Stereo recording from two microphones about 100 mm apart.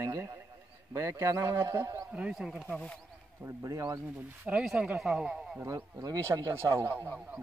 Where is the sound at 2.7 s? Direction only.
10° left (ahead or behind).